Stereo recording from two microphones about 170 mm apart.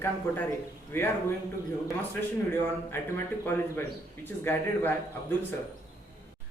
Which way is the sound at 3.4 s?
10° left (ahead or behind).